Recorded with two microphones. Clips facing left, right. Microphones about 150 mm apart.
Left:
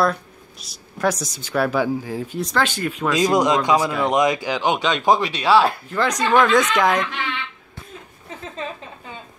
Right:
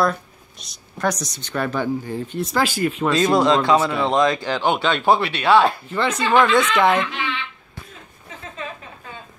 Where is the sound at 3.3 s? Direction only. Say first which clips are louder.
Right 2 dB; 15° left (ahead or behind); by 6.6 s centre (ahead or behind).